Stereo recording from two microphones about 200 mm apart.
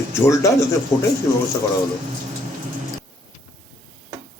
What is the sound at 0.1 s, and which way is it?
Speech, 15° left (ahead or behind).